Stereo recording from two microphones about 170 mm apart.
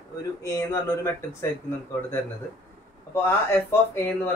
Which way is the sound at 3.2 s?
15° left (ahead or behind).